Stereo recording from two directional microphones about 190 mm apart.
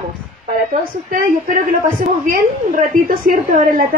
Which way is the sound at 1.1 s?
45° right (ahead or behind).